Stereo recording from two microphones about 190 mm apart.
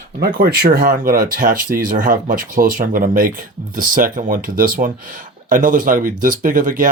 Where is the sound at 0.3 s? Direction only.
50° right (ahead or behind).